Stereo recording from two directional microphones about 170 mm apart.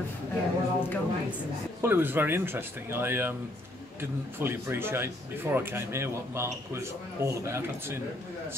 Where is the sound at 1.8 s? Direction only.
15° right (ahead or behind).